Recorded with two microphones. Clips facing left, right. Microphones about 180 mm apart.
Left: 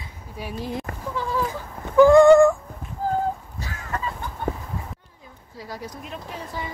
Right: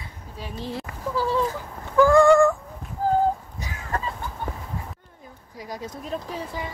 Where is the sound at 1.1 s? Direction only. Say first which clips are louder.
Right 4 dB; 35° right (ahead or behind).